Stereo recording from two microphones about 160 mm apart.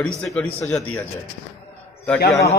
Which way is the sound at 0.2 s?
5° left (ahead or behind).